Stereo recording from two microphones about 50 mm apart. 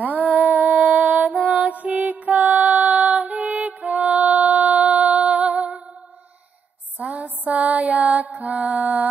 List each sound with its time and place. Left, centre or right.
0.2 s music: right
7.0 s mantra: right